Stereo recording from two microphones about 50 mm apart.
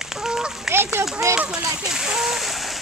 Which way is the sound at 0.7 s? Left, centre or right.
Right.